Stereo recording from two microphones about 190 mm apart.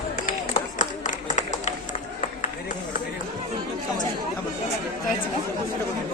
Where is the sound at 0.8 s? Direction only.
40° left (ahead or behind).